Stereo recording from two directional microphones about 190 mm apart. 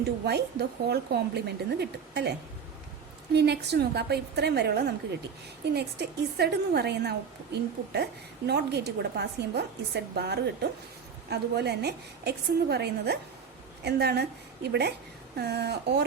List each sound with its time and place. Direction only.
0.0 s a woman's voice: 60° right (ahead or behind)
3.3 s a woman's voice: 60° right (ahead or behind)